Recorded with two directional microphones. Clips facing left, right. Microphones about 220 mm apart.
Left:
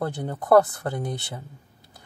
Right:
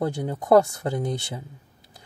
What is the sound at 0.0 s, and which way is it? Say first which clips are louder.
Speech: right 2 dB; 15° right (ahead or behind).